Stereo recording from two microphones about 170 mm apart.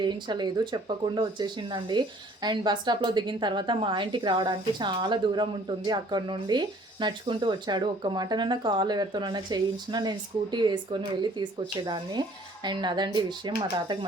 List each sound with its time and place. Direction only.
0.0 s speech: 25° right (ahead or behind)